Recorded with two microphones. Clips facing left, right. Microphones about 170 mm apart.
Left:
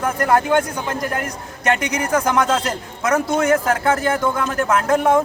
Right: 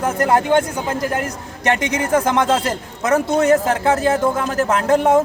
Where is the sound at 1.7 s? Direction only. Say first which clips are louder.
Right 3 dB; 25° right (ahead or behind).